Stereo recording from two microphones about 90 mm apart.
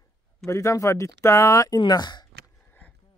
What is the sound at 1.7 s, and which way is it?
Speech, 50° left (ahead or behind).